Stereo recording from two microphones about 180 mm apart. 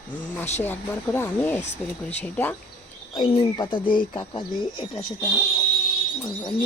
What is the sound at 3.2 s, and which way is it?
Speech, 30° left (ahead or behind).